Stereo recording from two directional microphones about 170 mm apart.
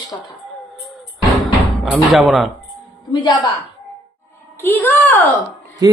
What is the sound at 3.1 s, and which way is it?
Speech, 30° left (ahead or behind).